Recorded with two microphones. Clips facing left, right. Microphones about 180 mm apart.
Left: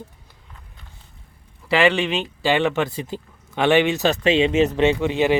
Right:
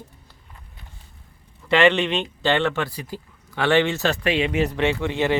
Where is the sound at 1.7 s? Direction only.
5° left (ahead or behind).